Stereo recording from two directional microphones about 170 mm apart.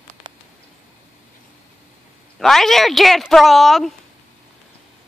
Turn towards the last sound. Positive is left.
turn(degrees=0)  # may be behind; listen again after turning